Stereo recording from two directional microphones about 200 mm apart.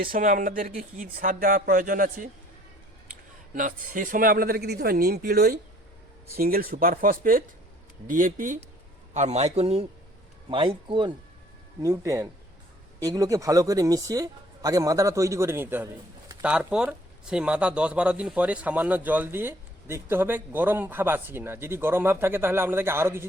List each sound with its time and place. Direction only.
0.0 s speech: 45° right (ahead or behind)
3.5 s a man's voice: 40° right (ahead or behind); by 23.2 s 10° right (ahead or behind)